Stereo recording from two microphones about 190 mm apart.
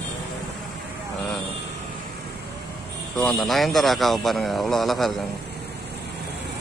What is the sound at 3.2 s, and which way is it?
Speech, centre (ahead or behind).